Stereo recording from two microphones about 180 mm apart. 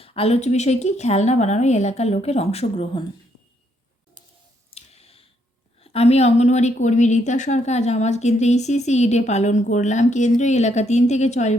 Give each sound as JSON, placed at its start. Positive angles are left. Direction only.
{"t": 0.0, "sound": "a woman's voice", "side_deg": 35}
{"t": 4.7, "sound": "a sound", "side_deg": 35}
{"t": 5.8, "sound": "a woman's voice", "side_deg": 35}